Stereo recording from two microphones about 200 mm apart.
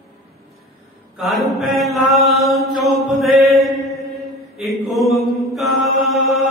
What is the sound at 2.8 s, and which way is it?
Mantra, centre (ahead or behind).